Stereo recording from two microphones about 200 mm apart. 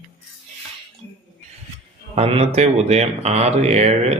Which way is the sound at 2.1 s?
30° right (ahead or behind).